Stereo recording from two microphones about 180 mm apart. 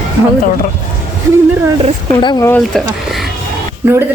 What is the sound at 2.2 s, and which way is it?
Speech, 20° left (ahead or behind).